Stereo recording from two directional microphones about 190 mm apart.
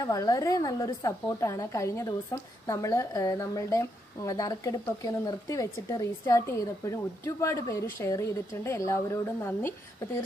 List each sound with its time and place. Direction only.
0.0 s a woman's voice: 20° left (ahead or behind)